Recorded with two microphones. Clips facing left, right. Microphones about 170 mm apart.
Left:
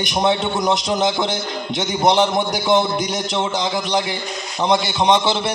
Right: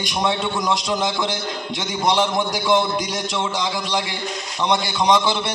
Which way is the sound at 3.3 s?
25° left (ahead or behind).